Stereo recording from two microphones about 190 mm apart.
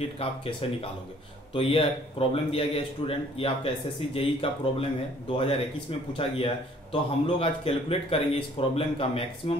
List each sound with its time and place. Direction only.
0.2 s speech: 30° left (ahead or behind)